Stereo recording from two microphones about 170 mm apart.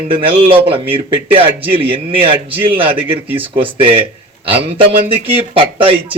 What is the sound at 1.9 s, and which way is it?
Speech, 30° right (ahead or behind).